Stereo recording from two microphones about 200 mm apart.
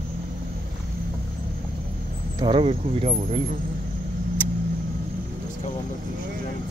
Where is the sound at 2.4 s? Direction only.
25° right (ahead or behind).